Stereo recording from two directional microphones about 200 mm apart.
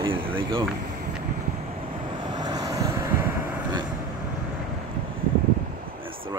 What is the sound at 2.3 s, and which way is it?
Vehicle, 20° right (ahead or behind).